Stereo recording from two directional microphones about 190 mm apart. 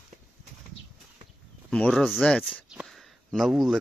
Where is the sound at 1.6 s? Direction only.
5° left (ahead or behind).